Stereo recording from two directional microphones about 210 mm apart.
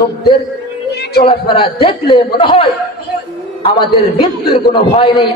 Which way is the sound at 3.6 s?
25° left (ahead or behind).